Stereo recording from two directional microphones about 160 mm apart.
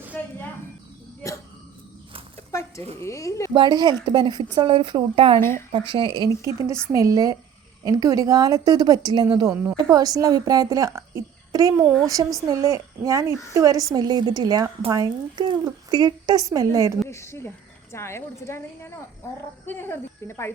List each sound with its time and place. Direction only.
2.5 s a sound: 20° left (ahead or behind)
3.0 s speech: 20° left (ahead or behind)
3.5 s a woman's voice: 30° right (ahead or behind)
17.1 s a woman's voice: 15° left (ahead or behind)